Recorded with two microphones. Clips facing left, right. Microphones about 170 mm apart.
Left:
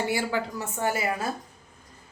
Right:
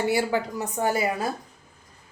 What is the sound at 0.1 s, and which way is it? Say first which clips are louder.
Speech: right 3 dB; 20° right (ahead or behind).